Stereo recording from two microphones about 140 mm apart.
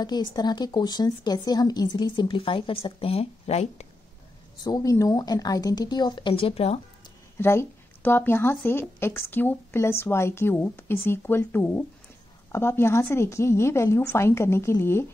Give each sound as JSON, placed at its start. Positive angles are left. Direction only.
{"t": 0.0, "sound": "speech", "side_deg": 30}
{"t": 4.6, "sound": "a woman's voice", "side_deg": 25}
{"t": 7.3, "sound": "a woman's voice", "side_deg": 15}